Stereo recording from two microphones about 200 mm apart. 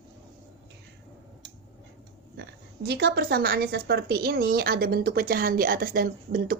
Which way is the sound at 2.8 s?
55° right (ahead or behind).